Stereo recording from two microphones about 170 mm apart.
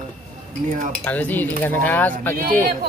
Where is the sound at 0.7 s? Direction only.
50° right (ahead or behind).